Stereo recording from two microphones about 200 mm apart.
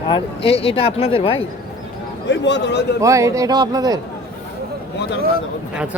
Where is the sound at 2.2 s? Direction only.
65° left (ahead or behind).